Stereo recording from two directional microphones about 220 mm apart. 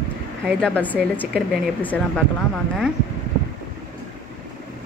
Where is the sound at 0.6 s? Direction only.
5° left (ahead or behind).